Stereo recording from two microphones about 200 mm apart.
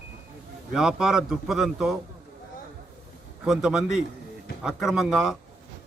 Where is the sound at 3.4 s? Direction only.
5° right (ahead or behind).